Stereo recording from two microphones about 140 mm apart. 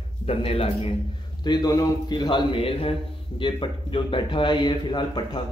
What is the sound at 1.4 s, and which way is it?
Speech, 30° left (ahead or behind).